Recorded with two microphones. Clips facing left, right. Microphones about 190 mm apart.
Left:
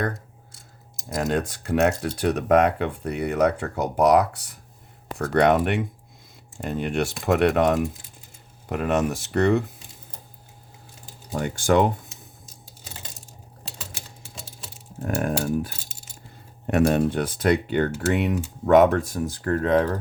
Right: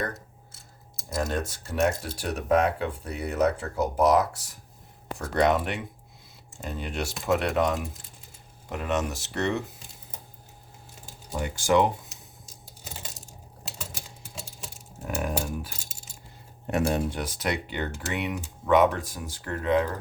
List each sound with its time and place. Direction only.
1.6 s speech: 65° left (ahead or behind)
11.3 s speech: 55° left (ahead or behind)
15.0 s mechanisms: 50° left (ahead or behind)
16.6 s mechanisms: 60° left (ahead or behind); by 19.8 s 45° left (ahead or behind)